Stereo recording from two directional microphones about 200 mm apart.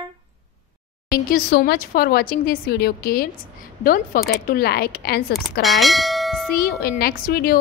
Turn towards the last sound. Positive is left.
turn(degrees=50)  # may be behind; listen again after turning